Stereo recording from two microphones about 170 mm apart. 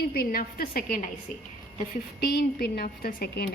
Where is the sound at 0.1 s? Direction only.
60° left (ahead or behind).